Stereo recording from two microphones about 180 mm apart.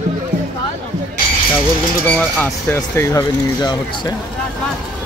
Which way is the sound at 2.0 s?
10° left (ahead or behind).